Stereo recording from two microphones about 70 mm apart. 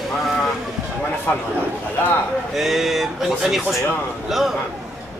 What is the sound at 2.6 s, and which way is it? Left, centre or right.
Speech, centre.